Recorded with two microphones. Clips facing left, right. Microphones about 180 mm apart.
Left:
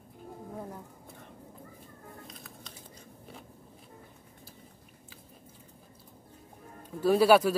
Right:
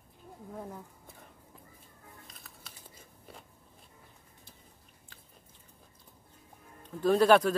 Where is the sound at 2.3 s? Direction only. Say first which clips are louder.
Left 6 dB; centre (ahead or behind).